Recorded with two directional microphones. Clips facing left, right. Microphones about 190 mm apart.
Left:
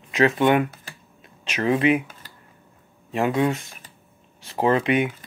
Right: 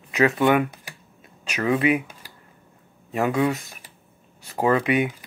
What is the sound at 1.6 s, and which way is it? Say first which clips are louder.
Speech: left 1 dB; 30° left (ahead or behind).